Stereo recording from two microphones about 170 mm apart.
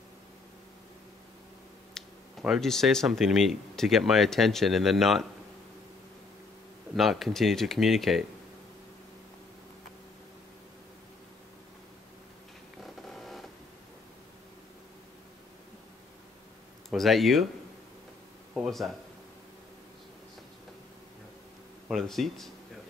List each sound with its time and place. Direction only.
2.0 s speech: centre (ahead or behind)
7.0 s speech: centre (ahead or behind)
13.2 s printer: centre (ahead or behind)
16.9 s speech: centre (ahead or behind)
18.5 s speech: centre (ahead or behind)
21.8 s speech: centre (ahead or behind)